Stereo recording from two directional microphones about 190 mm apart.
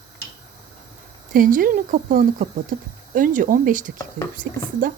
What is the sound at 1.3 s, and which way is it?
A woman's voice, 45° right (ahead or behind).